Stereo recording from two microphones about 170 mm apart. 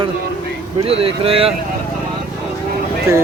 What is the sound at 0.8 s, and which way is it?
Speech, 35° right (ahead or behind).